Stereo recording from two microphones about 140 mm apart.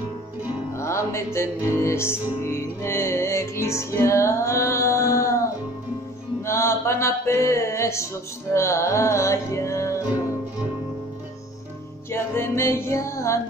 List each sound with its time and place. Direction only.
0.7 s music: 20° left (ahead or behind)
6.4 s mantra: 20° left (ahead or behind)
8.5 s music: 20° left (ahead or behind)
12.1 s music: 20° left (ahead or behind)